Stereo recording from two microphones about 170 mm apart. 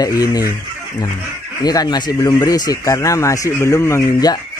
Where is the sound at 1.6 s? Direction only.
25° left (ahead or behind).